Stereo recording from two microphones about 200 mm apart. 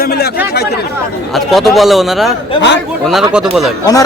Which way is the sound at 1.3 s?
Centre (ahead or behind).